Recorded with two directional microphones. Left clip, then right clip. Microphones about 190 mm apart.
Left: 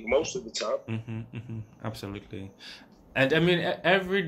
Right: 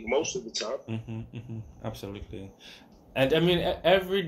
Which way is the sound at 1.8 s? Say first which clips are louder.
Even; 40° left (ahead or behind).